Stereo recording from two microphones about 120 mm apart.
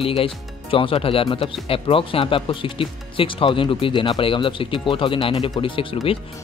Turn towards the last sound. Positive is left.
turn(degrees=45)  # may be behind; listen again after turning